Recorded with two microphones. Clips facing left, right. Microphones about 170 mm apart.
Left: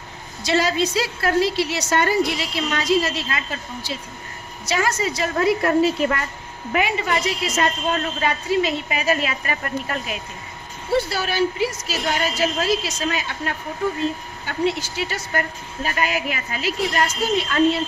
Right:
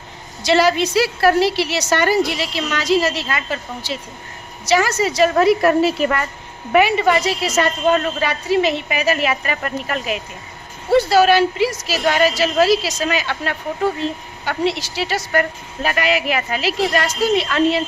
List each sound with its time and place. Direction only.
0.4 s a woman's voice: 75° right (ahead or behind)